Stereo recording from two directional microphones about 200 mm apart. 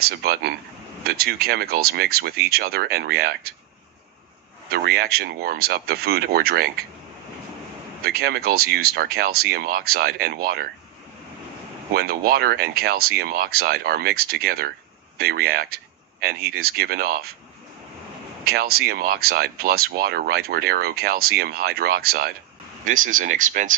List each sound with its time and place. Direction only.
0.2 s speech: 50° right (ahead or behind)
4.6 s speech: 50° right (ahead or behind)
8.0 s speech: 50° right (ahead or behind)
11.9 s speech: 50° right (ahead or behind)
18.4 s speech: 50° right (ahead or behind)